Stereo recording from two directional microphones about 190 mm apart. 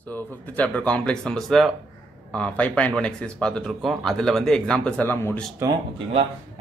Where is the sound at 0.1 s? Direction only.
5° left (ahead or behind).